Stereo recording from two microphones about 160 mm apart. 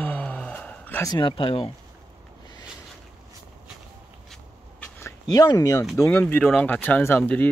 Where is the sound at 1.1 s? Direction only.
30° left (ahead or behind).